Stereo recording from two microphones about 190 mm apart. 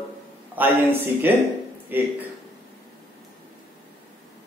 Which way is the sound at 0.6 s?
10° right (ahead or behind).